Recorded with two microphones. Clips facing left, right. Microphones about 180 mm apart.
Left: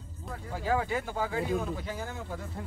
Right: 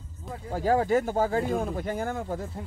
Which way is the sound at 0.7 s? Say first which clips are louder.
Right 7 dB; 45° right (ahead or behind).